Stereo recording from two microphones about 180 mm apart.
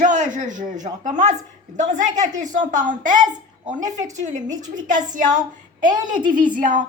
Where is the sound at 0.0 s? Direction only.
45° right (ahead or behind).